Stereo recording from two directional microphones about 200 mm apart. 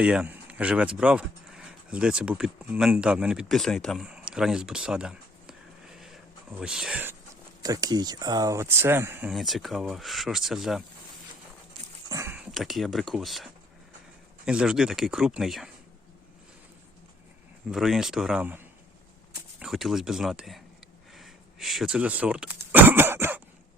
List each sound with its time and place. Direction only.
0.0 s speech: 5° right (ahead or behind)
7.6 s speech: 20° right (ahead or behind)
9.3 s speech: centre (ahead or behind)
12.0 s a sound: 15° right (ahead or behind)
12.4 s speech: centre (ahead or behind)
17.7 s speech: centre (ahead or behind)